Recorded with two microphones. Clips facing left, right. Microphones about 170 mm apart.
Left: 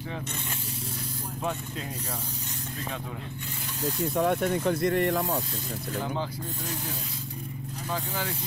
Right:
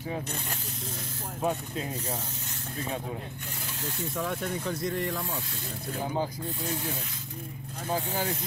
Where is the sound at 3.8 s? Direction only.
40° left (ahead or behind).